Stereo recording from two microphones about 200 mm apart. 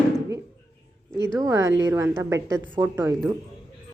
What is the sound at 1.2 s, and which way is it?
A woman's voice, 15° right (ahead or behind).